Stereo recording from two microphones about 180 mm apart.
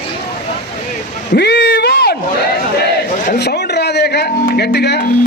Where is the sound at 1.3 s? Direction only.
70° left (ahead or behind).